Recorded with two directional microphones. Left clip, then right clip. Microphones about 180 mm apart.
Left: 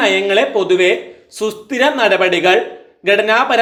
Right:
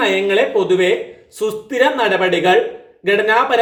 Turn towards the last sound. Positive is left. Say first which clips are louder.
# left 1 dB
turn(degrees=20)  # may be behind; listen again after turning